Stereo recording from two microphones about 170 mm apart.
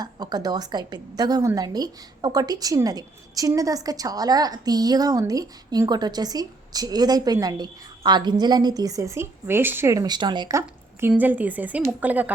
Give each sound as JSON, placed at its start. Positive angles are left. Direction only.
{"t": 0.0, "sound": "a woman's voice", "side_deg": -25}
{"t": 11.0, "sound": "a woman's voice", "side_deg": -10}